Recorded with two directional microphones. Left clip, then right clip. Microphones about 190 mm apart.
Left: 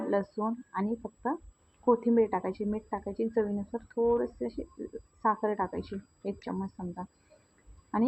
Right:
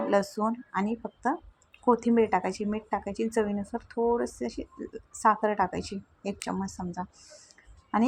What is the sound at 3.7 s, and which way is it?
Speech, 25° right (ahead or behind).